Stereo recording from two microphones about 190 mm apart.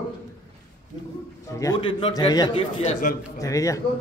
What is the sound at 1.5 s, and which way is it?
A man's voice, 20° left (ahead or behind).